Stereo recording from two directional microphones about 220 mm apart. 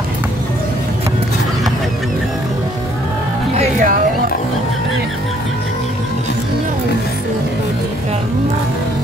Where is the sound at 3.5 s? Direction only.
40° right (ahead or behind).